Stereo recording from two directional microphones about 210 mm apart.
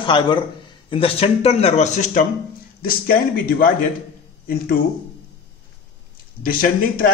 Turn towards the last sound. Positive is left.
turn(degrees=40)  # may be behind; listen again after turning